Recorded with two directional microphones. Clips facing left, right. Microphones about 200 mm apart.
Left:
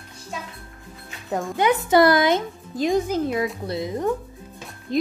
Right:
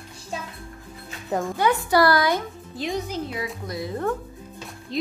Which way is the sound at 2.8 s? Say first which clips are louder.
Left 7 dB; 45° left (ahead or behind).